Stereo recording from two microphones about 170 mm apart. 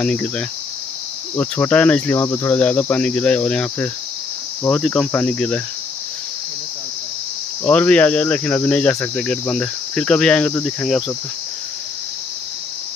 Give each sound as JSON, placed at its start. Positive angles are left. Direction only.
{"t": 0.0, "sound": "cricket", "side_deg": 5}
{"t": 7.6, "sound": "cricket", "side_deg": 10}